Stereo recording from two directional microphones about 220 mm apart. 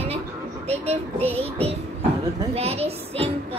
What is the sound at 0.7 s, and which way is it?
A woman's voice, 30° right (ahead or behind).